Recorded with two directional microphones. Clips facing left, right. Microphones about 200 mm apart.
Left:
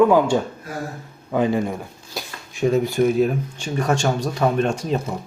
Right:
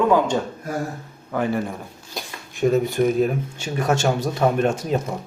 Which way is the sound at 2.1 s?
Centre (ahead or behind).